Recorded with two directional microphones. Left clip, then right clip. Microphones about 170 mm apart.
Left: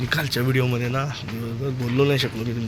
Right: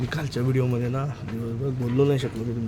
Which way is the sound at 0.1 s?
Centre (ahead or behind).